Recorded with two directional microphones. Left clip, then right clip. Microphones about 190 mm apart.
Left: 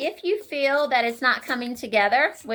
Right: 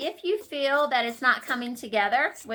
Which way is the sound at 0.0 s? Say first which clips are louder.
Left 3 dB; 25° left (ahead or behind).